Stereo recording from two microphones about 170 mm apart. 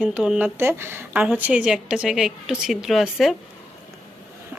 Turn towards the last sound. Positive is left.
turn(degrees=0)  # may be behind; listen again after turning